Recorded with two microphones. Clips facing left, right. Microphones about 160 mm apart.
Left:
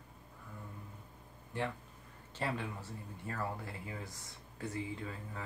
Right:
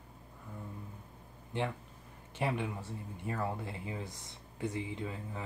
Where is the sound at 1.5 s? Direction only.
20° right (ahead or behind).